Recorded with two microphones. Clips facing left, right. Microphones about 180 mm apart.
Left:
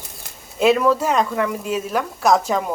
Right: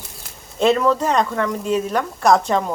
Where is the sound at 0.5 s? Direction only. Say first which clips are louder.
Even; 5° left (ahead or behind).